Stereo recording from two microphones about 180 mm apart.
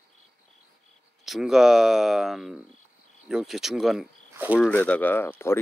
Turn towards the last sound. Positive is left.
turn(degrees=10)  # may be behind; listen again after turning